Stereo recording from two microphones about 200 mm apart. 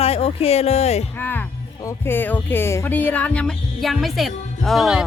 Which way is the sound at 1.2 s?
10° left (ahead or behind).